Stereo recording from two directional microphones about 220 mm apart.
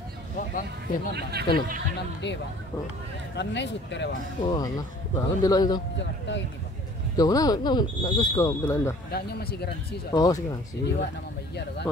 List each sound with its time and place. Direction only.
0.4 s a sound: 40° left (ahead or behind)
1.1 s speech: 45° right (ahead or behind)
2.2 s speech: 55° left (ahead or behind)
4.4 s speech: 20° left (ahead or behind)
5.9 s speech: 55° left (ahead or behind)
7.2 s speech: 15° left (ahead or behind)
9.1 s speech: 45° left (ahead or behind)
10.1 s speech: 15° left (ahead or behind)